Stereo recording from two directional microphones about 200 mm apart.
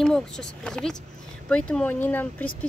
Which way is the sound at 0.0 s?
5° left (ahead or behind).